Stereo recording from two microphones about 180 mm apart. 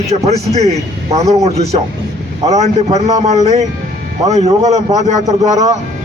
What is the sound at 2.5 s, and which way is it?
A man's voice, 40° right (ahead or behind).